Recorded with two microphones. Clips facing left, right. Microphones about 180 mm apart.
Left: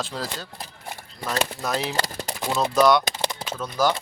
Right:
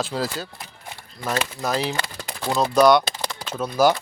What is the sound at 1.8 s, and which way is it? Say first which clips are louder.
Speech: even; 40° left (ahead or behind).